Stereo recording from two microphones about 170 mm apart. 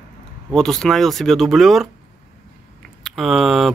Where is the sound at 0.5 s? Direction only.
5° left (ahead or behind).